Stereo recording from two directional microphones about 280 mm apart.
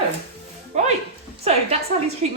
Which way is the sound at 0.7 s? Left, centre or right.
Right.